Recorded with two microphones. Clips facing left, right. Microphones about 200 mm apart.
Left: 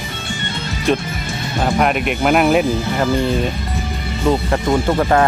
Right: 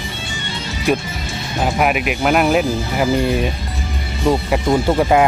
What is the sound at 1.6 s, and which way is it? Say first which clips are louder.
Speech: left 1 dB; 5° right (ahead or behind).